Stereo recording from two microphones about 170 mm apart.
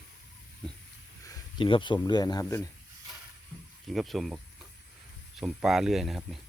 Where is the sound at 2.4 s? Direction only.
10° left (ahead or behind).